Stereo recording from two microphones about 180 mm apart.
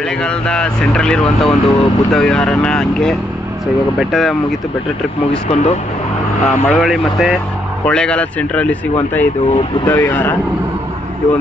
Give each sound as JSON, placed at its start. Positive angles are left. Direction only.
{"t": 0.2, "sound": "speech", "side_deg": 5}
{"t": 5.5, "sound": "speech", "side_deg": 35}
{"t": 6.4, "sound": "speech", "side_deg": 5}